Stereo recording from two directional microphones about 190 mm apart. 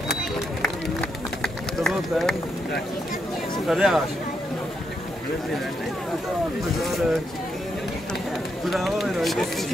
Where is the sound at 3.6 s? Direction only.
Centre (ahead or behind).